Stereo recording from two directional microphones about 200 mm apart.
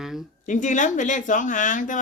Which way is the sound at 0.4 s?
40° left (ahead or behind).